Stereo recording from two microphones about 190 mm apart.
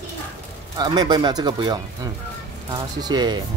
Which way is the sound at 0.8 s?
20° right (ahead or behind).